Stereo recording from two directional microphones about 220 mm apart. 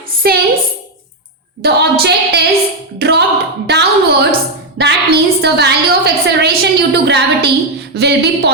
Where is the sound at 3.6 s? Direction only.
50° right (ahead or behind).